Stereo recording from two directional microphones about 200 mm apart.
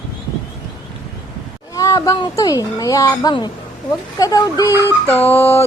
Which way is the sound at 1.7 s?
15° left (ahead or behind).